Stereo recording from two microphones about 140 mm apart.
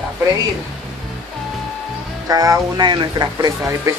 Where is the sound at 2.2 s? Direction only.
25° right (ahead or behind).